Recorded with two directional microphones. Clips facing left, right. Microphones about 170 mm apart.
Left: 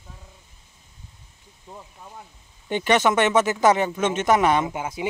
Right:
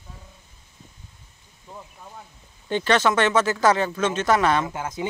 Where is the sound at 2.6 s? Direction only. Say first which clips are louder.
Left 1 dB; 15° left (ahead or behind).